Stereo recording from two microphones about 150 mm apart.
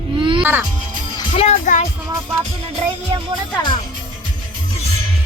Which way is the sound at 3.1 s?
35° right (ahead or behind).